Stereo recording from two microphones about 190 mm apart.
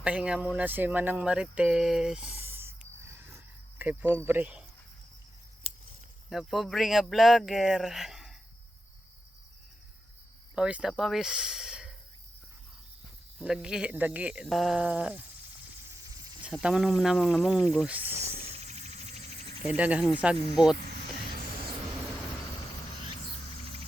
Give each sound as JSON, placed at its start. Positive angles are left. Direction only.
{"t": 0.0, "sound": "speech", "side_deg": -5}
{"t": 3.2, "sound": "cricket", "side_deg": -10}
{"t": 4.3, "sound": "speech", "side_deg": -10}
{"t": 5.7, "sound": "scissors", "side_deg": -30}
{"t": 6.3, "sound": "speech", "side_deg": 0}
{"t": 10.5, "sound": "speech", "side_deg": -5}
{"t": 13.4, "sound": "speech", "side_deg": -5}
{"t": 16.4, "sound": "speech", "side_deg": -5}
{"t": 18.4, "sound": "cricket", "side_deg": -35}
{"t": 19.7, "sound": "speech", "side_deg": -5}
{"t": 20.8, "sound": "vehicle", "side_deg": -50}